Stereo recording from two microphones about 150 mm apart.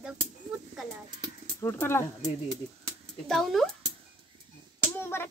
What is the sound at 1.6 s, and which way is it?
Speech, 15° left (ahead or behind).